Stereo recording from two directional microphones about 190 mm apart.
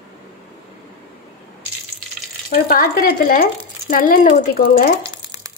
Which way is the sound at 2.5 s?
50° left (ahead or behind).